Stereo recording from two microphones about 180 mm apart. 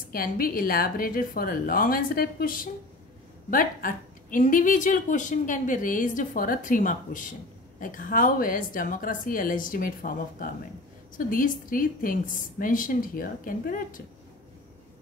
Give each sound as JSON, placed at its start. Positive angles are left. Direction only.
{"t": 0.1, "sound": "a woman's voice", "side_deg": 55}